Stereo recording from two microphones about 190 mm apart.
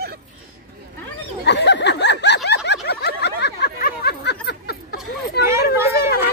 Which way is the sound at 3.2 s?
60° left (ahead or behind).